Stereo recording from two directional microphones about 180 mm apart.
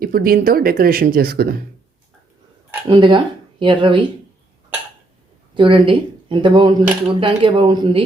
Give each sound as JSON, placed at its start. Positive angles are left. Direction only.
{"t": 0.0, "sound": "speech", "side_deg": -55}
{"t": 2.9, "sound": "speech", "side_deg": -25}
{"t": 5.5, "sound": "speech", "side_deg": -30}